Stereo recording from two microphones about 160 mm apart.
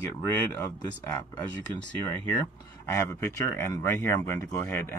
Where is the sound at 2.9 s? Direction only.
20° left (ahead or behind).